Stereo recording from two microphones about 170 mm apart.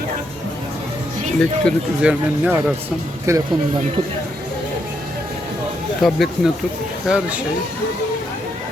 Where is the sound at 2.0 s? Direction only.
10° right (ahead or behind).